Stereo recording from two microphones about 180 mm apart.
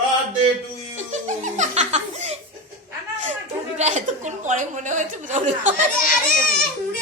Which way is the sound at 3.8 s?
40° right (ahead or behind).